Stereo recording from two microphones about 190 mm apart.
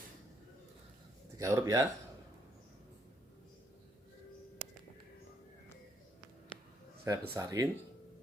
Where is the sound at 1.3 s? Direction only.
15° right (ahead or behind).